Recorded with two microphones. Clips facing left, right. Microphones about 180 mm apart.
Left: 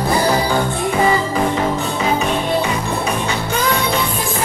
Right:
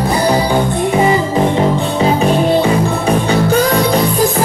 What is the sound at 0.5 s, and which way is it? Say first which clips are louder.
Music: right 4 dB; 20° right (ahead or behind).